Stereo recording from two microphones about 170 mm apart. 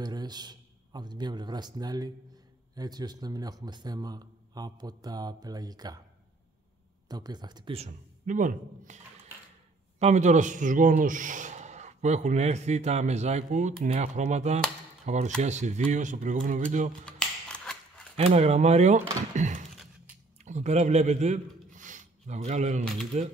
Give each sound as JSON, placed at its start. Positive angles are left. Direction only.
{"t": 0.0, "sound": "a man's voice", "side_deg": -25}
{"t": 7.1, "sound": "speech", "side_deg": -25}
{"t": 7.7, "sound": "a man's voice", "side_deg": -45}
{"t": 17.0, "sound": "scissors", "side_deg": 5}
{"t": 18.1, "sound": "speech", "side_deg": -40}
{"t": 19.3, "sound": "a sound", "side_deg": -45}
{"t": 20.4, "sound": "a man's voice", "side_deg": -45}